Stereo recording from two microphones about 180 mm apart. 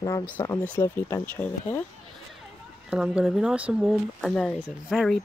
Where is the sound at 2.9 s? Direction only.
5° right (ahead or behind).